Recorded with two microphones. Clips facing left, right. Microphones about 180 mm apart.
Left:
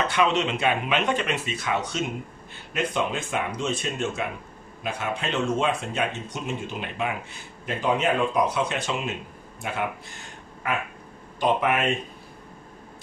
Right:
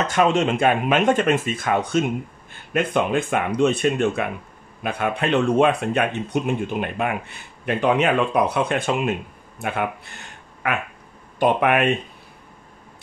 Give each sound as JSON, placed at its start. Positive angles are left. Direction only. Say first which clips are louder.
{"t": 0.0, "sound": "speech", "louder": "right 4 dB", "side_deg": -45}
{"t": 10.6, "sound": "quack", "louder": "right 3 dB", "side_deg": -65}
{"t": 11.3, "sound": "speech", "louder": "right 5 dB", "side_deg": -60}